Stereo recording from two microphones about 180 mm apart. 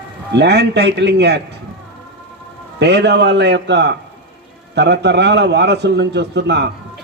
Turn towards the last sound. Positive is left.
turn(degrees=-70)  # may be behind; listen again after turning